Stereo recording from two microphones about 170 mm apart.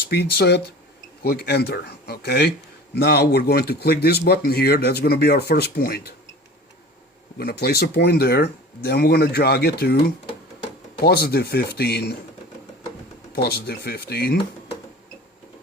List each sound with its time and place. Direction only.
0.1 s speech: 70° left (ahead or behind)
7.3 s speech: 65° left (ahead or behind)
11.0 s speech: 65° left (ahead or behind)
13.3 s speech: 70° left (ahead or behind)